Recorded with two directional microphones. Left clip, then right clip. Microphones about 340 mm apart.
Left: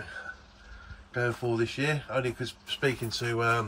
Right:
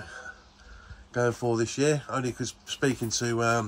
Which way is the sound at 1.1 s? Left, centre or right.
Centre.